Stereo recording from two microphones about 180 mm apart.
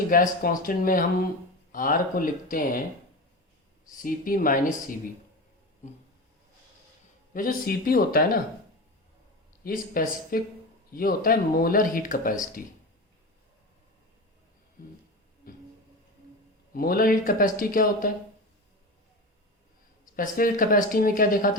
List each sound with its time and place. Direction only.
0.1 s speech: 50° left (ahead or behind)
3.9 s speech: 50° left (ahead or behind)
7.3 s speech: 50° left (ahead or behind)
9.6 s speech: 50° left (ahead or behind)
16.7 s speech: 55° left (ahead or behind)
20.1 s speech: 50° left (ahead or behind)